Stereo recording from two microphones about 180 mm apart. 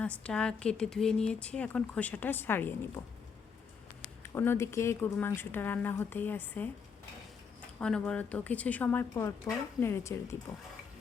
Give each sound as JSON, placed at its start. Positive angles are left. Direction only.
{"t": 0.0, "sound": "speech", "side_deg": 5}
{"t": 4.2, "sound": "speech", "side_deg": 15}
{"t": 7.8, "sound": "speech", "side_deg": 5}